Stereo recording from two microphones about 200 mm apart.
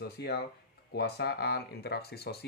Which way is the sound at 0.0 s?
55° left (ahead or behind).